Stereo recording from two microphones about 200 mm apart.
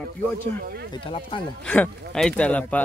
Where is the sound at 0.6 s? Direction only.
55° right (ahead or behind).